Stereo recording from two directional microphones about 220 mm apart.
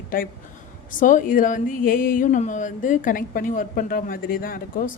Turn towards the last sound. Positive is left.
turn(degrees=40)  # may be behind; listen again after turning